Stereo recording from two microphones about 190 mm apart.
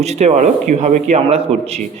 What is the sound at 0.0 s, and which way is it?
Speech, 35° right (ahead or behind).